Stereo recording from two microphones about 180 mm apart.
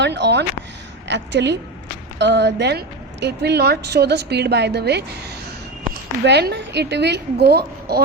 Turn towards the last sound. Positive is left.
turn(degrees=-60)  # may be behind; listen again after turning